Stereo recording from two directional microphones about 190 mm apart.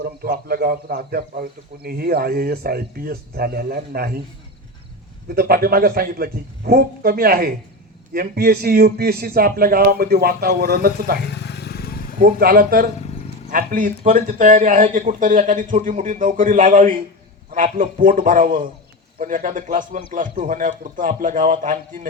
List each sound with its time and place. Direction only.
0.0 s speech: 55° right (ahead or behind)
5.3 s speech: 55° right (ahead or behind)
11.3 s vehicle: 60° left (ahead or behind)
12.2 s speech: 50° right (ahead or behind)